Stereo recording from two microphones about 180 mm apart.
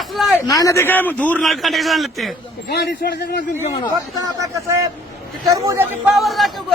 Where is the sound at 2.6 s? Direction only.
65° left (ahead or behind).